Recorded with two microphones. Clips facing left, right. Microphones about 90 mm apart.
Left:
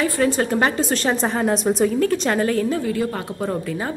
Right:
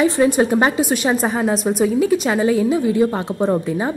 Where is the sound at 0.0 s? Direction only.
15° right (ahead or behind).